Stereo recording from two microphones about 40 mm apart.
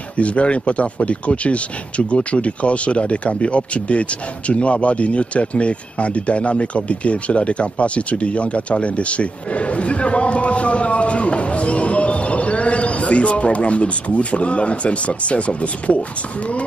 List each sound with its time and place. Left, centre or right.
0.2 s speech: left